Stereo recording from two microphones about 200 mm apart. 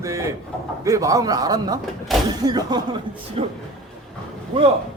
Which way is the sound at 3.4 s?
30° right (ahead or behind).